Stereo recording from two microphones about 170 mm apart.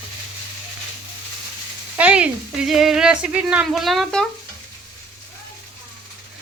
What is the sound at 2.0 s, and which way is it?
Speech, 10° right (ahead or behind).